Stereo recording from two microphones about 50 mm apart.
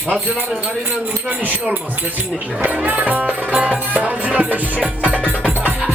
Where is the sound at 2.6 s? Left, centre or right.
Right.